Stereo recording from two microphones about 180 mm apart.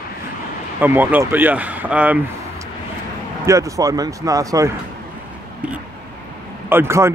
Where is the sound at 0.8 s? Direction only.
10° right (ahead or behind).